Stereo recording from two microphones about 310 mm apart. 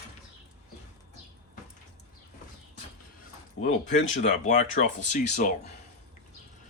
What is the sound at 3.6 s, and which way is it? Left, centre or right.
Speech, left.